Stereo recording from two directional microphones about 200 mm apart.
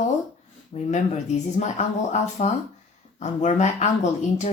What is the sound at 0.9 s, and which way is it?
Speech, 35° left (ahead or behind).